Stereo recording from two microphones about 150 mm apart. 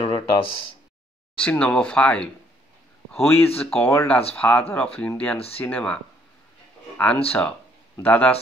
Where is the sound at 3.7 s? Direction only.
15° left (ahead or behind).